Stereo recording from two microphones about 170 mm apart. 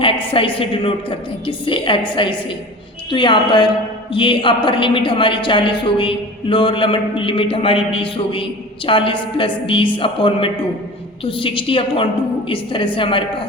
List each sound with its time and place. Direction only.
0.3 s a woman's voice: 30° left (ahead or behind)